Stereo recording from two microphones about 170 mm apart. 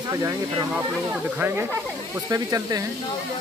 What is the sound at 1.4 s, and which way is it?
Speech, 10° right (ahead or behind).